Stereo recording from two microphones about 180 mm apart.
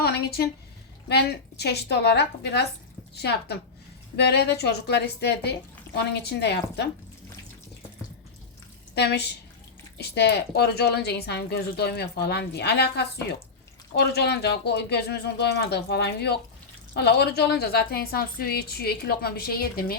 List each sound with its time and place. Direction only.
0.0 s a sound: 60° left (ahead or behind)
1.0 s speech: 65° left (ahead or behind)
9.0 s speech: 65° left (ahead or behind)